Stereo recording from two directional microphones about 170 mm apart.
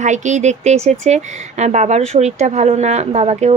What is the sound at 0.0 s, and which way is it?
Speech, 45° right (ahead or behind).